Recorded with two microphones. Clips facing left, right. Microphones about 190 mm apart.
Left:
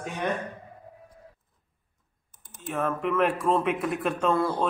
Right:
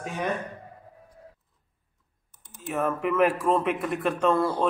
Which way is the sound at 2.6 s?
5° right (ahead or behind).